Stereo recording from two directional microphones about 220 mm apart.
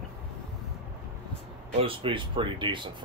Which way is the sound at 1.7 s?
25° right (ahead or behind).